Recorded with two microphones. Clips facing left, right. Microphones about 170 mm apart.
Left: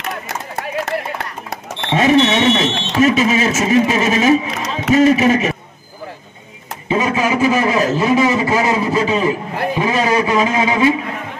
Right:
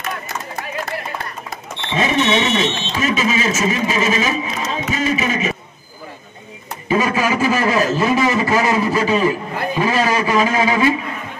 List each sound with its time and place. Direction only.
1.8 s speech: 65° left (ahead or behind)
6.9 s a man's voice: 20° left (ahead or behind)